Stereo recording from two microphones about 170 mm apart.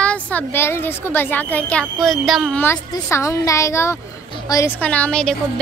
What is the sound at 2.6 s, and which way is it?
Speech, 15° left (ahead or behind).